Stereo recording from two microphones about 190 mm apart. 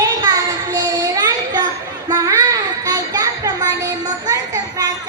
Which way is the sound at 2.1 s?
20° right (ahead or behind).